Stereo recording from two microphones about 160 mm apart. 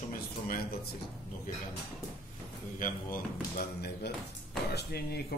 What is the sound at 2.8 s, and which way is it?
Speech, 65° left (ahead or behind).